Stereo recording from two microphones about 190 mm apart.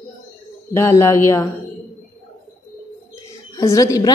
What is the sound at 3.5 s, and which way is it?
Speech, 15° left (ahead or behind).